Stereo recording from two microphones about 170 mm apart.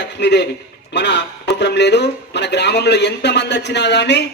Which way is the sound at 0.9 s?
90° left.